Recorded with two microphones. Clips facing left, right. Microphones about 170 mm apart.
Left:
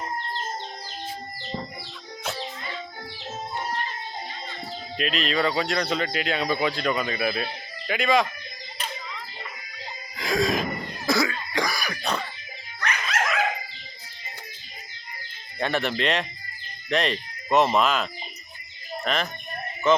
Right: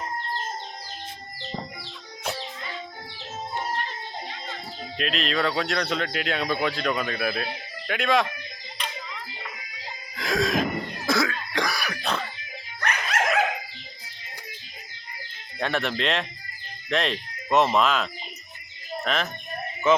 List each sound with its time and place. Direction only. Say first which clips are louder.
4.9 s speech: left 1 dB; centre (ahead or behind)
10.2 s throat clearing: even; centre (ahead or behind)
12.8 s dog: right 1 dB; 60° right (ahead or behind)
15.5 s speech: left 1 dB; centre (ahead or behind)